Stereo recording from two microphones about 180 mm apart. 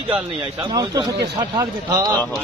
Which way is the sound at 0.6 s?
25° right (ahead or behind).